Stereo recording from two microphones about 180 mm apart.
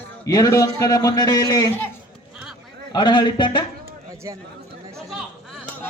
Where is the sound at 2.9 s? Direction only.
25° left (ahead or behind).